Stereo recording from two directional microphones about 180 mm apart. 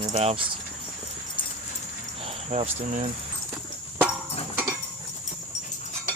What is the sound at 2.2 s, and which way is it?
Speech, 35° right (ahead or behind).